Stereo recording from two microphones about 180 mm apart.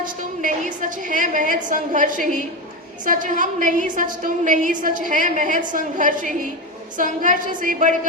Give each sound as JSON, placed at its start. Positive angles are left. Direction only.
{"t": 0.0, "sound": "a woman's voice", "side_deg": -45}